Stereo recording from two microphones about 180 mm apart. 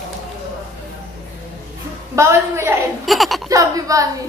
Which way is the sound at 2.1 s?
15° right (ahead or behind).